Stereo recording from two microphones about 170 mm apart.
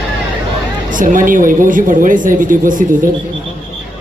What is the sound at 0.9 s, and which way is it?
Speech, 50° right (ahead or behind).